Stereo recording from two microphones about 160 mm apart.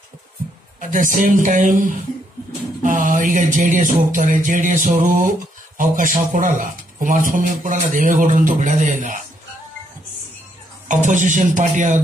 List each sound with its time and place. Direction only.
0.7 s speech: 55° right (ahead or behind)
2.8 s music: 55° right (ahead or behind)
5.8 s speech: 55° right (ahead or behind)
10.9 s music: 50° right (ahead or behind)